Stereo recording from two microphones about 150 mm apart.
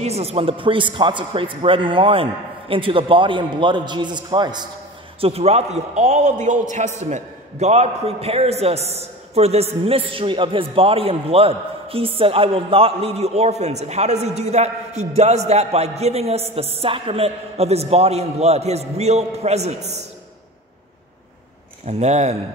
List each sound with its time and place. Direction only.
0.0 s a man's voice: 45° right (ahead or behind)
5.2 s a man's voice: 45° right (ahead or behind)
21.8 s a man's voice: 50° right (ahead or behind)